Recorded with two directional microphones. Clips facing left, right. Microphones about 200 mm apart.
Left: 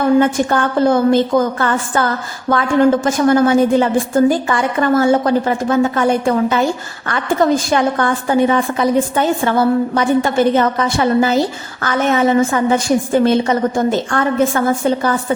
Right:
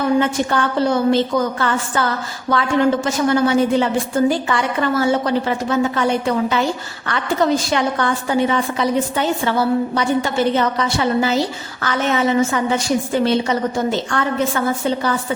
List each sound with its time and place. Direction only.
0.2 s a woman's voice: 50° left (ahead or behind)